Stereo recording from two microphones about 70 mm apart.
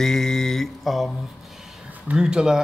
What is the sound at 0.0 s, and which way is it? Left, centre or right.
Mantra, centre.